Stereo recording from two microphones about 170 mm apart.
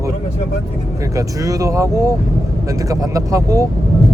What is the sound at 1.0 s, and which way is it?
Speech, 20° right (ahead or behind).